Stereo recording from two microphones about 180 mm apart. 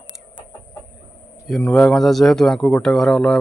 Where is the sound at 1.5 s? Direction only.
Centre (ahead or behind).